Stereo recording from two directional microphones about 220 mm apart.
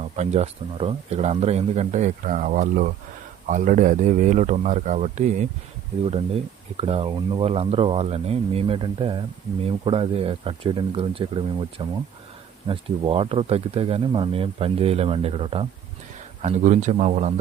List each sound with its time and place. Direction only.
0.0 s speech: 30° right (ahead or behind)
6.7 s speech: 25° right (ahead or behind)